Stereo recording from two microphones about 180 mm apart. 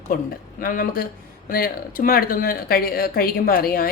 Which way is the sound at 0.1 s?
55° left (ahead or behind).